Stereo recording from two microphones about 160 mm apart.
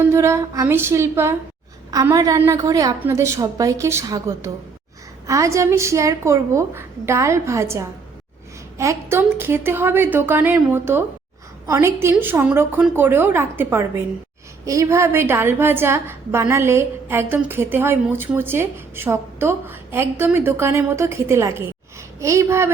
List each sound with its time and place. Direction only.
0.0 s a woman's voice: 15° right (ahead or behind)